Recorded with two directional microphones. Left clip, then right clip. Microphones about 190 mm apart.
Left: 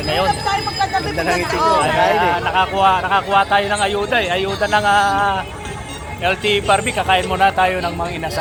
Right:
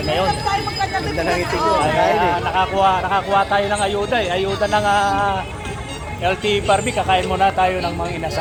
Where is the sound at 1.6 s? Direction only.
65° left (ahead or behind).